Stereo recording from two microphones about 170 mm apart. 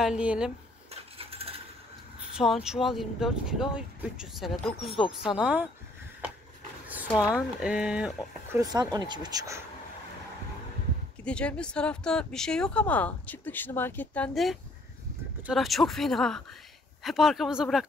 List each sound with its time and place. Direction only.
0.0 s speech: 5° right (ahead or behind)
1.1 s coin: 35° right (ahead or behind)
2.1 s speech: 5° right (ahead or behind)
7.6 s speech: 5° right (ahead or behind)
8.5 s speech: 25° right (ahead or behind)
11.2 s speech: 5° left (ahead or behind)